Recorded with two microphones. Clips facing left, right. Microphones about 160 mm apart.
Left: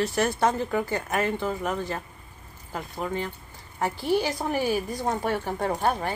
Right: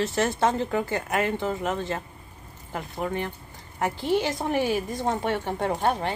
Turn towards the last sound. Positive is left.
turn(degrees=-25)  # may be behind; listen again after turning